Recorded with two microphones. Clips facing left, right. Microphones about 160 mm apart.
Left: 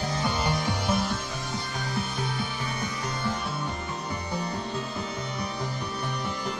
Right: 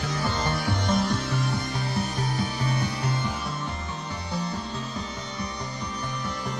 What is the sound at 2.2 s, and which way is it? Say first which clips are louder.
Music: right 3 dB; 40° right (ahead or behind).